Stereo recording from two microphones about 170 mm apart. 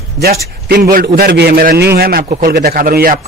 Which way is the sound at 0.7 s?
60° right (ahead or behind).